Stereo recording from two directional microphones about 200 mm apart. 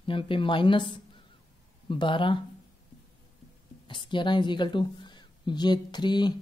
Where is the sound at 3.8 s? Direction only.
25° left (ahead or behind).